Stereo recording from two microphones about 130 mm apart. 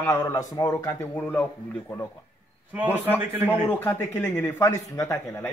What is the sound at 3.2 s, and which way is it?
Speech, 15° right (ahead or behind).